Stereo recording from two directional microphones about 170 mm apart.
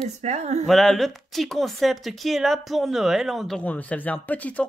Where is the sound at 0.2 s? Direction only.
40° right (ahead or behind).